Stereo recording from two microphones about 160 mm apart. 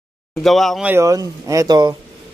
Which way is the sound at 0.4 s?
Centre (ahead or behind).